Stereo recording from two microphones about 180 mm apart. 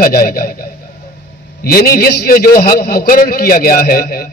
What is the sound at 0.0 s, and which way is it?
A man's voice, 55° left (ahead or behind).